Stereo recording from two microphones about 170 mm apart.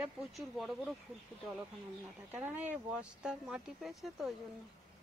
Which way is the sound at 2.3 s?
10° right (ahead or behind).